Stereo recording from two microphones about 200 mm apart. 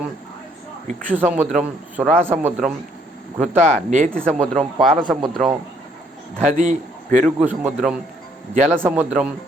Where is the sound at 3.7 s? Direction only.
40° right (ahead or behind).